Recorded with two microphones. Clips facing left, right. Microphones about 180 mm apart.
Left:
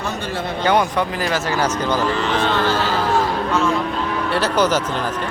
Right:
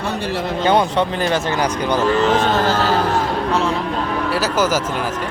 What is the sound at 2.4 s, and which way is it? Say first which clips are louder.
Music: right 2 dB; 45° right (ahead or behind).